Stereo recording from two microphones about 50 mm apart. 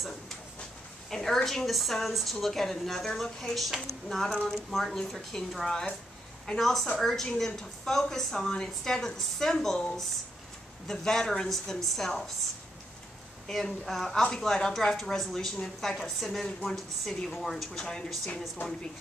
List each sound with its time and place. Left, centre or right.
1.1 s a woman's voice: centre
10.9 s a woman's voice: centre
13.5 s a woman's voice: centre